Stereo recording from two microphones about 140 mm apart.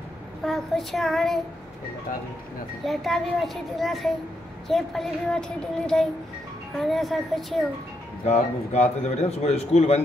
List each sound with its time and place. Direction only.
0.5 s a child's voice: centre (ahead or behind)
2.8 s a child's voice: centre (ahead or behind)
8.3 s speech: 50° left (ahead or behind)